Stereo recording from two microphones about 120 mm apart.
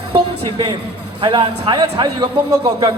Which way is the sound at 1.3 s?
45° right (ahead or behind).